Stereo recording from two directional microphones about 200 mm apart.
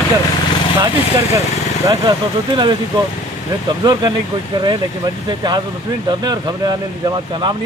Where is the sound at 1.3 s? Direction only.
20° right (ahead or behind).